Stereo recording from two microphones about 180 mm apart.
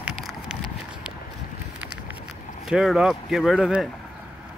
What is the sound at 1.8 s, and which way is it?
Vehicle, 10° right (ahead or behind).